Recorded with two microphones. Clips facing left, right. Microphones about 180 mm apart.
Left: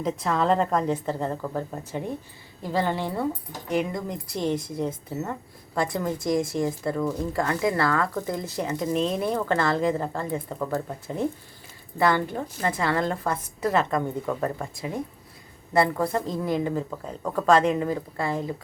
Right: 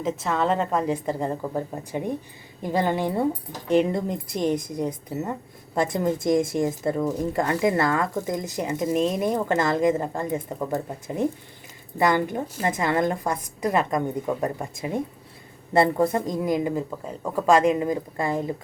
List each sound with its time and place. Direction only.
0.0 s speech: centre (ahead or behind)
3.7 s speech: 30° right (ahead or behind)